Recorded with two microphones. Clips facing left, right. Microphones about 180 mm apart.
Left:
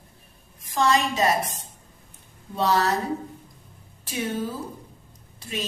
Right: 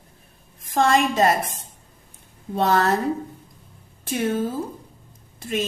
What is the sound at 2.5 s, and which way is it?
Speech, 55° right (ahead or behind).